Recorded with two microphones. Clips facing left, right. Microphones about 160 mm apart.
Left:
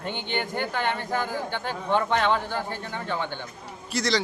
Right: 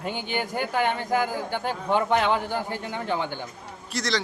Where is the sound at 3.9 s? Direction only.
Centre (ahead or behind).